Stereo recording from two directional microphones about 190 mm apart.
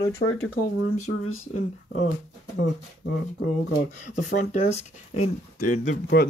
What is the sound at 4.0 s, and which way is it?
Speech, 40° left (ahead or behind).